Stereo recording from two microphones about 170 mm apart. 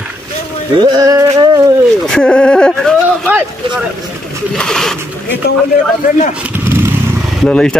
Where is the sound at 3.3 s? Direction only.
10° right (ahead or behind).